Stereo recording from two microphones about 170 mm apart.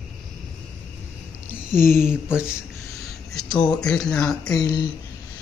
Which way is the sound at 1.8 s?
15° left (ahead or behind).